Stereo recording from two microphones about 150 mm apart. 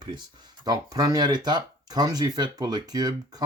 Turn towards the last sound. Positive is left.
turn(degrees=-25)  # may be behind; listen again after turning